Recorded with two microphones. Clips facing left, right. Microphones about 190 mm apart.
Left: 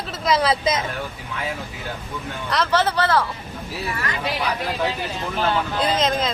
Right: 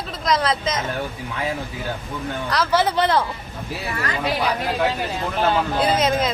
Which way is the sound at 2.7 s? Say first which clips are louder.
Right 1 dB; 15° right (ahead or behind).